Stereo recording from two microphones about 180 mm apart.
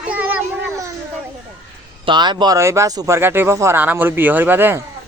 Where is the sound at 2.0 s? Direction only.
25° right (ahead or behind).